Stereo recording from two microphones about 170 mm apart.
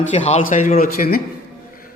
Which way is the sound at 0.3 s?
45° left (ahead or behind).